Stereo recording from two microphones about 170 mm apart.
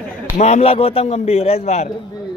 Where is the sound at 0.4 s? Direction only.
40° left (ahead or behind).